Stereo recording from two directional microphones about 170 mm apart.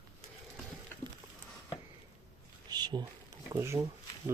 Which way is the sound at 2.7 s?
25° right (ahead or behind).